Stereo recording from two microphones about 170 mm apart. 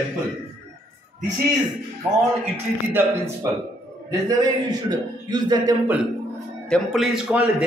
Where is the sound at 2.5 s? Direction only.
15° right (ahead or behind).